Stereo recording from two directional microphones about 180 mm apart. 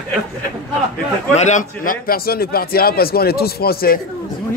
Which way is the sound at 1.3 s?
40° left (ahead or behind).